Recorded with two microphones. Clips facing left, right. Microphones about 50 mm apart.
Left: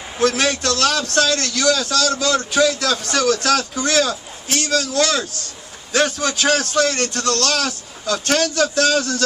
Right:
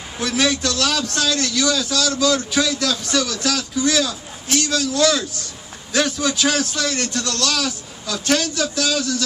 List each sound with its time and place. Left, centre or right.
0.2 s a man's voice: left